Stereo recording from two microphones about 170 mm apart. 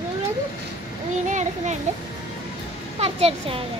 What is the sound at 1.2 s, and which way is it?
Speech, 45° right (ahead or behind).